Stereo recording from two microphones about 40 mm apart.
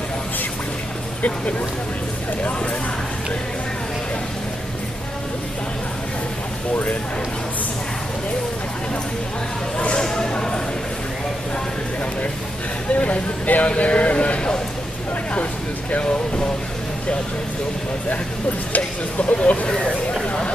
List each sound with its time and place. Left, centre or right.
6.7 s speech: left
9.8 s a sound: left
10.0 s a sound: centre
12.9 s speech: left
15.9 s speech: left
18.8 s speech: left